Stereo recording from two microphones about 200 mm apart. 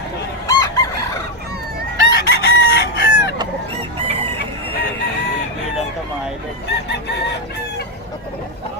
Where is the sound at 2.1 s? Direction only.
55° left (ahead or behind).